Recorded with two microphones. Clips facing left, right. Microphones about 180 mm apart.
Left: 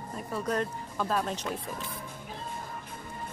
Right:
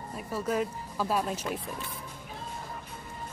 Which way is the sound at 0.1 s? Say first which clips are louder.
Right 1 dB; 5° right (ahead or behind).